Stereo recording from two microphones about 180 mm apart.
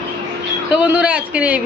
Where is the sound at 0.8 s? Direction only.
5° right (ahead or behind).